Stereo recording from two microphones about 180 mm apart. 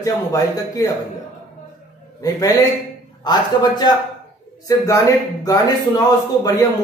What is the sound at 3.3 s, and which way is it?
Speech, 25° left (ahead or behind).